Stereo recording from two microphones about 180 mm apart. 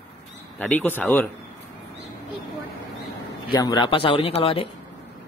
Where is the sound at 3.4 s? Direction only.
25° left (ahead or behind).